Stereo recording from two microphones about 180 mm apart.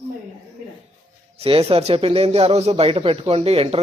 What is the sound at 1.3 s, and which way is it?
Speech, 35° right (ahead or behind).